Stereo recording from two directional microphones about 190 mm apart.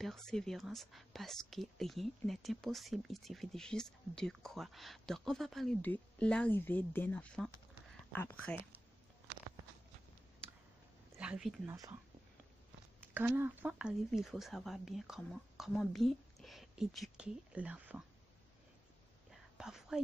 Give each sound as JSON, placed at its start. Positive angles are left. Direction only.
{"t": 0.0, "sound": "speech", "side_deg": 5}
{"t": 11.1, "sound": "speech", "side_deg": -5}
{"t": 11.6, "sound": "speech", "side_deg": -20}
{"t": 13.1, "sound": "speech", "side_deg": -10}
{"t": 19.3, "sound": "whispering", "side_deg": -5}